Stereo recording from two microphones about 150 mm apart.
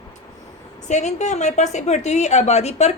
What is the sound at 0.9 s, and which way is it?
A woman's voice, 50° left (ahead or behind).